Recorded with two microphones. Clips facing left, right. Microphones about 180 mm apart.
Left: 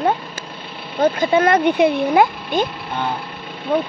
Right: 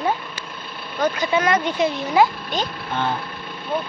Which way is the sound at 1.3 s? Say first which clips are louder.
Left 6 dB; 55° left (ahead or behind).